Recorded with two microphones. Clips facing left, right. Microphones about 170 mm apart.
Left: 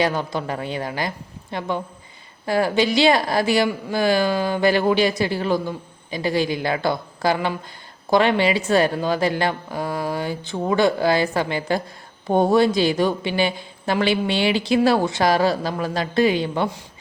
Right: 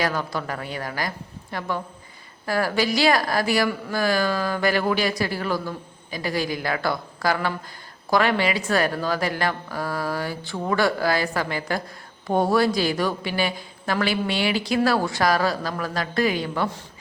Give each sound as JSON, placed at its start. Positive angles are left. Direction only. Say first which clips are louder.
{"t": 0.0, "sound": "speech", "louder": "left 4 dB", "side_deg": 25}